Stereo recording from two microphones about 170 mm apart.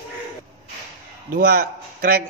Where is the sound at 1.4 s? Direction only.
65° right (ahead or behind).